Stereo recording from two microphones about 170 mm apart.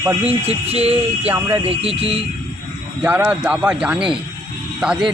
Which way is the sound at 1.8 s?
35° right (ahead or behind).